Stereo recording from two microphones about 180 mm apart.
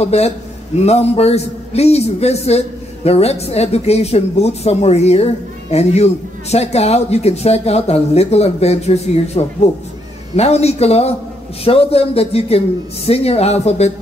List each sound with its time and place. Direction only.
0.0 s a man's voice: 35° left (ahead or behind)